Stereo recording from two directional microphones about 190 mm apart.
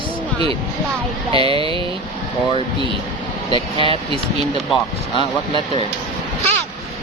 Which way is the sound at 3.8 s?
30° right (ahead or behind).